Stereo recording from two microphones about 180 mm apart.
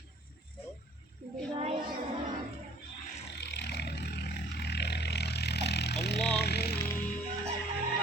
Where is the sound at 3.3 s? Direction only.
70° left (ahead or behind).